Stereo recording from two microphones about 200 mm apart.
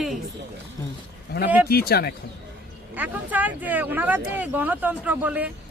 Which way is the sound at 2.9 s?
10° right (ahead or behind).